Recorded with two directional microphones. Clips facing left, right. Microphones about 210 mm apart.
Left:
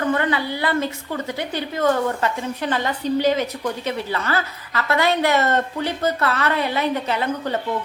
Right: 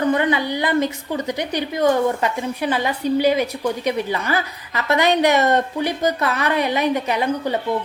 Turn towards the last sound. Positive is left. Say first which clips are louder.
# right 2 dB
turn(degrees=-15)  # may be behind; listen again after turning